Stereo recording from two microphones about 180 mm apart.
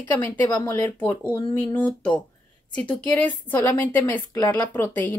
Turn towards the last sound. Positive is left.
turn(degrees=10)  # may be behind; listen again after turning